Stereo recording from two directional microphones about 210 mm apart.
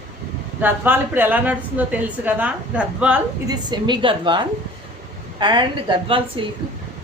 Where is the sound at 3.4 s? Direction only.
20° right (ahead or behind).